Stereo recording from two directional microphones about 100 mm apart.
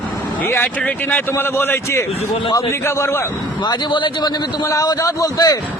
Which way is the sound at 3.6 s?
50° left (ahead or behind).